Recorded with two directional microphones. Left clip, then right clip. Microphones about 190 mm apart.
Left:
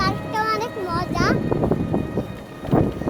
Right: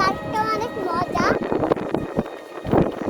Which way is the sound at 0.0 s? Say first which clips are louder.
Right 1 dB; 20° left (ahead or behind).